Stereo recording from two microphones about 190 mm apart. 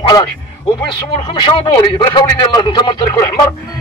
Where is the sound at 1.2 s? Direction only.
25° left (ahead or behind).